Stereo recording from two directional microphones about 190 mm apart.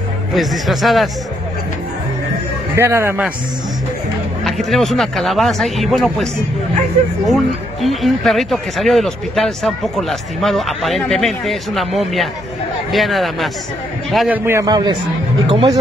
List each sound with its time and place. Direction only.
0.3 s speech: centre (ahead or behind)
2.7 s a man's voice: 15° right (ahead or behind)
4.5 s speech: centre (ahead or behind)
7.2 s a man's voice: centre (ahead or behind); by 15.8 s 25° right (ahead or behind)